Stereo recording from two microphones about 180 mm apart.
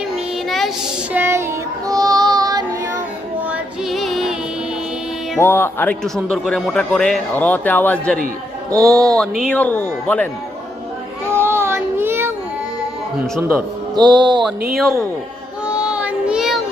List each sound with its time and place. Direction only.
0.4 s child singing: centre (ahead or behind)
1.1 s child singing: 15° right (ahead or behind)
3.5 s music: centre (ahead or behind)
5.4 s a man's voice: 10° left (ahead or behind)
8.7 s music: 20° right (ahead or behind)
9.1 s a man's voice: centre (ahead or behind)
11.3 s child singing: 15° right (ahead or behind)
13.2 s speech: centre (ahead or behind)
13.9 s music: 25° right (ahead or behind)
15.6 s child singing: 5° right (ahead or behind)